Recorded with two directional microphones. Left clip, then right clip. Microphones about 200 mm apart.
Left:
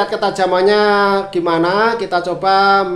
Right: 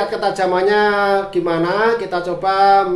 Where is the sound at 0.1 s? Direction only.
40° left (ahead or behind).